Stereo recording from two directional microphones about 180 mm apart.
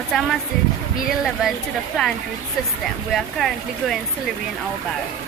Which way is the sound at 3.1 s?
Centre (ahead or behind).